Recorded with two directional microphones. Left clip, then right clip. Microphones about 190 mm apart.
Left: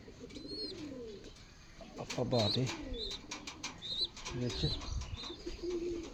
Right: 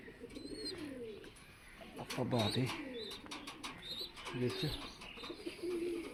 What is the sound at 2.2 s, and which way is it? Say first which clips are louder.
Speech: left 4 dB; 35° left (ahead or behind).